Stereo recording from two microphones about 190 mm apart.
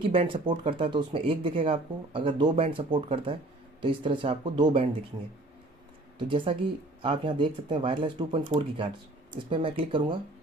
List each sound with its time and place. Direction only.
0.0 s speech: 30° right (ahead or behind)
6.1 s speech: 25° right (ahead or behind)